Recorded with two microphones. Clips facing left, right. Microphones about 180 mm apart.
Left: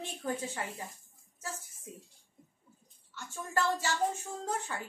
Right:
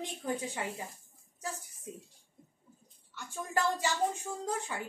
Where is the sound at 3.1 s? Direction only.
15° right (ahead or behind).